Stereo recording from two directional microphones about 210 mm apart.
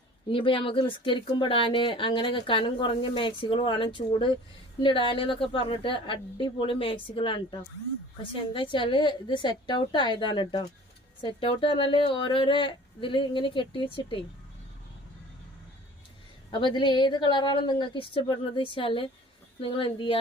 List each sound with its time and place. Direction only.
0.3 s speech: 25° left (ahead or behind)
16.5 s speech: 25° left (ahead or behind)